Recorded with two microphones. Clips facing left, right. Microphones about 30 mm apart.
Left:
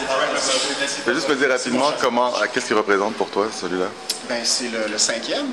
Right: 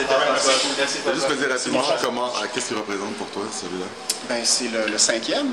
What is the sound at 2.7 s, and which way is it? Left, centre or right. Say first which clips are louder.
Speech: left 8 dB; left.